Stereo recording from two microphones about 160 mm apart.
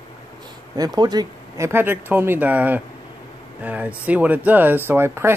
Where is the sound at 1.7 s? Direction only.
15° right (ahead or behind).